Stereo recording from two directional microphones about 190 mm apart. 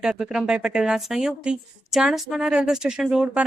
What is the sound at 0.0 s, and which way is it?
Speech, 5° right (ahead or behind).